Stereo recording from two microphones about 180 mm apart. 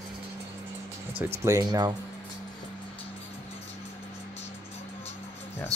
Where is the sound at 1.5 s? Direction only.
20° right (ahead or behind).